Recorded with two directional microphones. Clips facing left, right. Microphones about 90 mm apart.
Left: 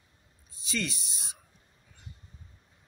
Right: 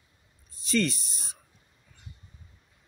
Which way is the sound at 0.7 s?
5° left (ahead or behind).